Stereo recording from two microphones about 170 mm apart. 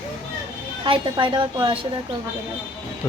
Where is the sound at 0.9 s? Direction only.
30° right (ahead or behind).